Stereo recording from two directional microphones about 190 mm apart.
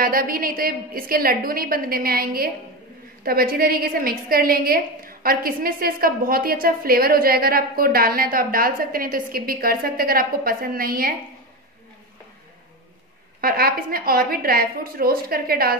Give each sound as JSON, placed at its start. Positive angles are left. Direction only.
{"t": 0.0, "sound": "a woman's voice", "side_deg": -50}
{"t": 13.4, "sound": "a woman's voice", "side_deg": -50}